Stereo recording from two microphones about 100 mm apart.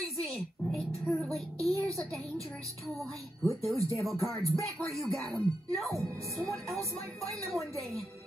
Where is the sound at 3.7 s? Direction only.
35° right (ahead or behind).